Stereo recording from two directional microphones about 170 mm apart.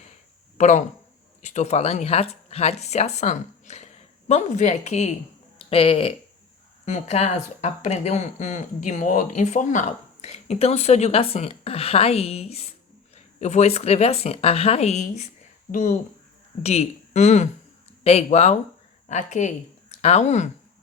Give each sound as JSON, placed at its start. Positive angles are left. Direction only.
{"t": 0.6, "sound": "speech", "side_deg": 45}